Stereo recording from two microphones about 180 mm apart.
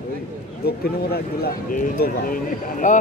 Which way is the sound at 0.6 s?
60° left (ahead or behind).